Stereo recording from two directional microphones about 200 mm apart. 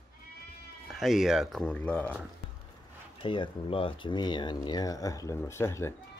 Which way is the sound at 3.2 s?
25° left (ahead or behind).